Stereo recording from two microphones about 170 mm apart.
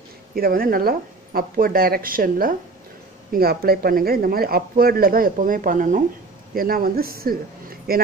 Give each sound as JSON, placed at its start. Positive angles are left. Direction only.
{"t": 0.4, "sound": "speech", "side_deg": -60}